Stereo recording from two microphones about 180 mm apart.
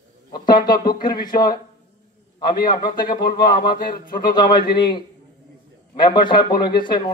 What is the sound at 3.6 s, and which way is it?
Speech, 55° left (ahead or behind).